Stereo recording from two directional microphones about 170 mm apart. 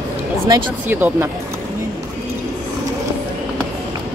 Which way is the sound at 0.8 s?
10° right (ahead or behind).